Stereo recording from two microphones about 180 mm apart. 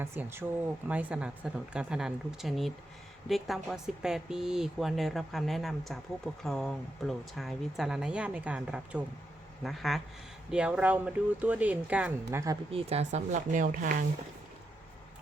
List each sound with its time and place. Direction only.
0.0 s a woman's voice: 15° right (ahead or behind)
12.7 s a woman's voice: 35° right (ahead or behind)